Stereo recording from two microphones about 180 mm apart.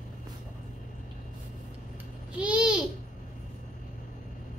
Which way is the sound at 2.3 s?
5° right (ahead or behind).